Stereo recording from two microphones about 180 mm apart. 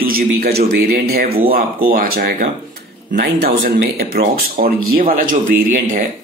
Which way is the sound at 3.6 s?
65° right (ahead or behind).